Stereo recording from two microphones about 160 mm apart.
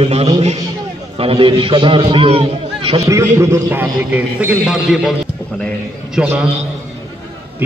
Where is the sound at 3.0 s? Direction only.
20° right (ahead or behind); by 5.1 s centre (ahead or behind).